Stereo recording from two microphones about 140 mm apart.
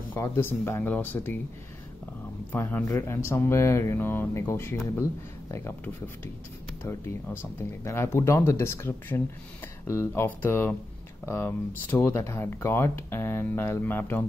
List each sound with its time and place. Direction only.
0.1 s speech: 15° left (ahead or behind)
2.5 s speech: 15° left (ahead or behind)
6.8 s speech: 20° left (ahead or behind)